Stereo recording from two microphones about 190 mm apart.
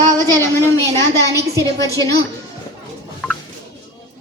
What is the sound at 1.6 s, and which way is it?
Speech, 15° left (ahead or behind).